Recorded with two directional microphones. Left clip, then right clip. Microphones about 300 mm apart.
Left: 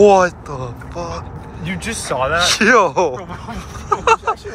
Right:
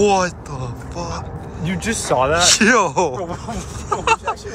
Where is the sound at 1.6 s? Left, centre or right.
Right.